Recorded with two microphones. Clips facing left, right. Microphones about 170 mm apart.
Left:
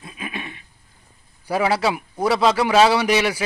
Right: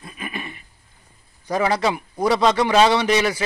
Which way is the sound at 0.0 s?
5° left (ahead or behind).